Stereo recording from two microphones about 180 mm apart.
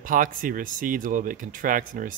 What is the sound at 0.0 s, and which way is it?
A man's voice, 50° right (ahead or behind).